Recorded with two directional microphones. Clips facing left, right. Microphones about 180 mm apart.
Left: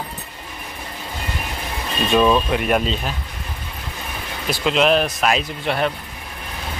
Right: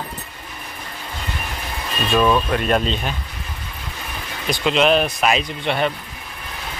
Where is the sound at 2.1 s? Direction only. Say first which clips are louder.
Left 1 dB; 15° left (ahead or behind).